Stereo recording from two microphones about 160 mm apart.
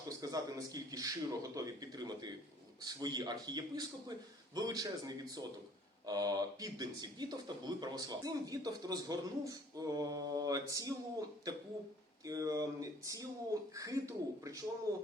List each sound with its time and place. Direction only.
0.2 s speech: 20° right (ahead or behind)